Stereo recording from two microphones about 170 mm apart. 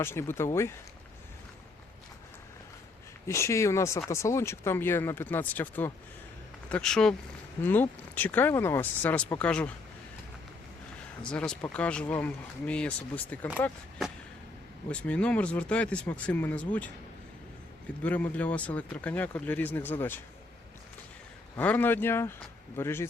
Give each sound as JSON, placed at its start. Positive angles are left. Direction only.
{"t": 0.0, "sound": "speech", "side_deg": 15}
{"t": 3.2, "sound": "speech", "side_deg": 15}
{"t": 11.2, "sound": "speech", "side_deg": 5}
{"t": 14.8, "sound": "speech", "side_deg": 5}
{"t": 18.0, "sound": "speech", "side_deg": 10}
{"t": 21.5, "sound": "speech", "side_deg": 10}